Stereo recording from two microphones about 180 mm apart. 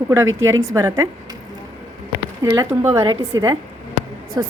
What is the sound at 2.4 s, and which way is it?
A woman's voice, 15° right (ahead or behind).